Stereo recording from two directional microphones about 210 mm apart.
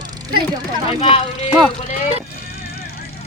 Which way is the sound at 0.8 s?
30° left (ahead or behind).